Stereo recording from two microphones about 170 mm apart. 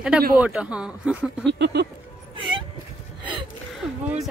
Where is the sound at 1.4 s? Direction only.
90° right.